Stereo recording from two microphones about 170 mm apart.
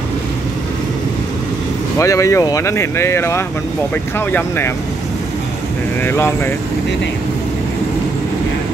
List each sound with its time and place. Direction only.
2.0 s speech: 20° left (ahead or behind)
6.0 s speech: 15° left (ahead or behind)